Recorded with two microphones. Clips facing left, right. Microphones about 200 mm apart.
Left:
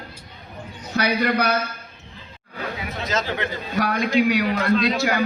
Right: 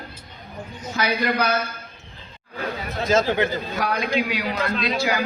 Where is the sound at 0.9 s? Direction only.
60° left (ahead or behind).